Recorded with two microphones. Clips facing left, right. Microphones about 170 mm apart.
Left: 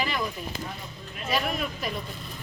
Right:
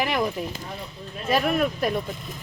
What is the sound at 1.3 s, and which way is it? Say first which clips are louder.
Speech: right 7 dB; 55° right (ahead or behind).